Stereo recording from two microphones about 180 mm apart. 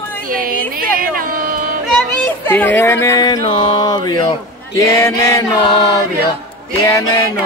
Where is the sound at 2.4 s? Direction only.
10° left (ahead or behind).